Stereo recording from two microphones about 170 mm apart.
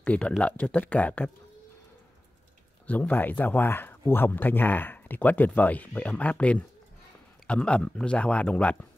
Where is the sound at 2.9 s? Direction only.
10° left (ahead or behind).